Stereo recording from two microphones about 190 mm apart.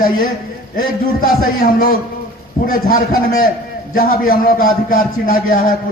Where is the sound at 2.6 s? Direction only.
50° left (ahead or behind).